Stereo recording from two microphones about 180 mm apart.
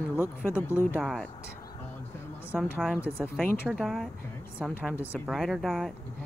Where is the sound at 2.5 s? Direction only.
5° left (ahead or behind).